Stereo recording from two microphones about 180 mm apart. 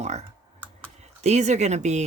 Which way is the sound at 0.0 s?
40° right (ahead or behind).